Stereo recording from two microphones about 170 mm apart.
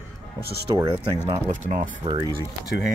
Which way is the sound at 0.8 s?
40° right (ahead or behind).